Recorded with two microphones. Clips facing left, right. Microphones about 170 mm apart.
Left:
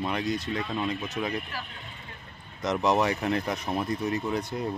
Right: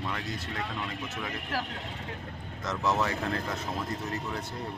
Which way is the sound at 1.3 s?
85° right.